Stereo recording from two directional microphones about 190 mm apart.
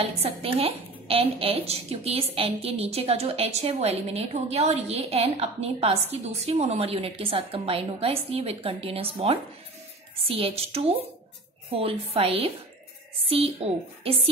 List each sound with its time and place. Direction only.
0.0 s a woman's voice: 30° right (ahead or behind)